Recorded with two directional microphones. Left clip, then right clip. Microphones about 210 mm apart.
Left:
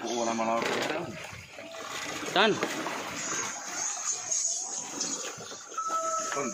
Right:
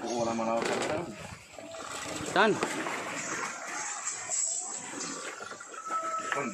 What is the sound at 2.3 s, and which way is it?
Speech, 5° right (ahead or behind).